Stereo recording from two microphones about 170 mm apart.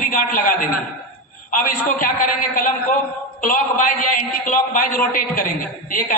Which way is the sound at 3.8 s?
55° left (ahead or behind).